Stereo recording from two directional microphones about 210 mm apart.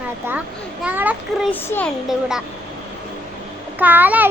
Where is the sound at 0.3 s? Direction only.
5° right (ahead or behind).